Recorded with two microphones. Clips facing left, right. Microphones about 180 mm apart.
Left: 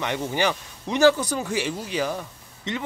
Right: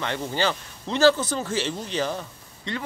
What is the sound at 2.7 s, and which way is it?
Speech, 20° left (ahead or behind).